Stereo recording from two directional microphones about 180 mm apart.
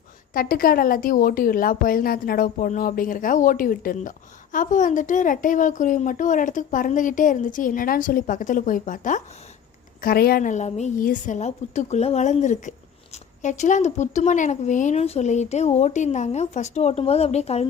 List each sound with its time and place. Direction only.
0.3 s a woman's voice: 55° left (ahead or behind); by 17.7 s 35° left (ahead or behind)